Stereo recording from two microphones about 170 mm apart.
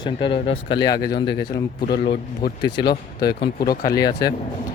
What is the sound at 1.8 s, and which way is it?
Speech, 65° left (ahead or behind).